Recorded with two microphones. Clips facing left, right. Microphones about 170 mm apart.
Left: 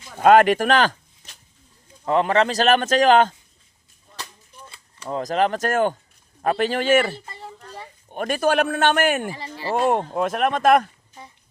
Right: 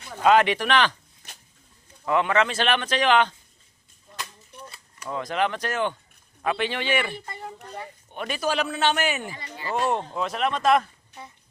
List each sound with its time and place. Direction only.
0.2 s a man's voice: 50° left (ahead or behind)
2.0 s a man's voice: 35° left (ahead or behind)
4.7 s a man's voice: 30° left (ahead or behind); by 9.3 s 50° left (ahead or behind)
9.4 s speech: 30° left (ahead or behind)
9.7 s a man's voice: 50° left (ahead or behind)